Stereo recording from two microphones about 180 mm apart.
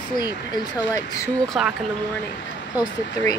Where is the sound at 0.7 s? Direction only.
20° left (ahead or behind).